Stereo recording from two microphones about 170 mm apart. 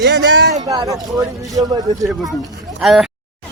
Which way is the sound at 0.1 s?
90° right.